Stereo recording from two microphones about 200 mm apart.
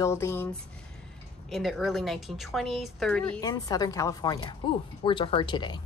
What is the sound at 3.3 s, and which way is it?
Speech, 20° left (ahead or behind).